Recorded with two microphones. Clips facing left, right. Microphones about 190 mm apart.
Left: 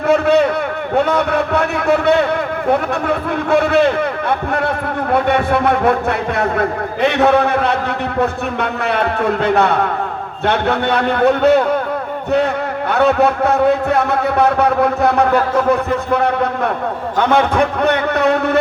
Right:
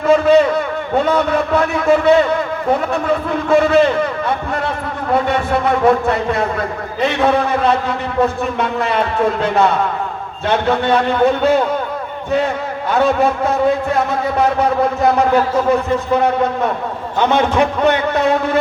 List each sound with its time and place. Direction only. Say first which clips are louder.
0.1 s a sound: right 2 dB; 60° left (ahead or behind)
0.9 s a man's voice: even; 60° left (ahead or behind)
5.1 s a man's voice: left 1 dB; 60° left (ahead or behind)
12.9 s a man's voice: left 1 dB; 65° left (ahead or behind)
17.2 s a man's voice: even; 60° left (ahead or behind)